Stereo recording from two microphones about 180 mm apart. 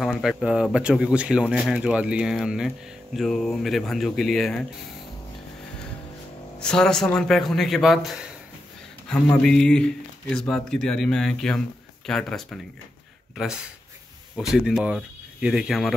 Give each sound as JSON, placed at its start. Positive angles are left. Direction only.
{"t": 0.0, "sound": "speech", "side_deg": 0}
{"t": 6.6, "sound": "speech", "side_deg": 5}
{"t": 14.3, "sound": "speech", "side_deg": -5}